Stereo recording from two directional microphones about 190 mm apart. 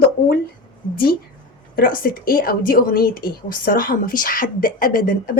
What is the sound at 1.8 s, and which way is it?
A woman's voice, 50° left (ahead or behind).